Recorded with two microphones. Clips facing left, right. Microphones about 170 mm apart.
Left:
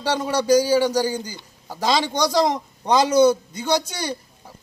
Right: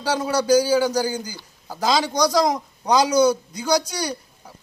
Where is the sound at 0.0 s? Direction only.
5° right (ahead or behind).